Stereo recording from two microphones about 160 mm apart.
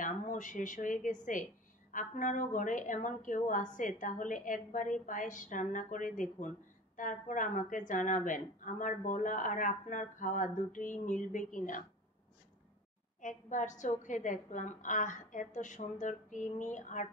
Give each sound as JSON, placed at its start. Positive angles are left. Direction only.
{"t": 0.0, "sound": "a woman's voice", "side_deg": 55}
{"t": 13.2, "sound": "a woman's voice", "side_deg": 55}